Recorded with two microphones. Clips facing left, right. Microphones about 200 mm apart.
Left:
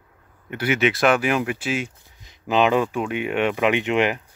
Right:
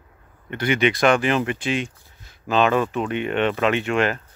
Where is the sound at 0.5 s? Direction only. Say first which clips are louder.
Right 1 dB; 5° left (ahead or behind).